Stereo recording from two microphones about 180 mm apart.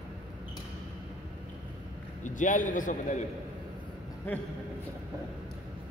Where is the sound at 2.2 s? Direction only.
45° left (ahead or behind).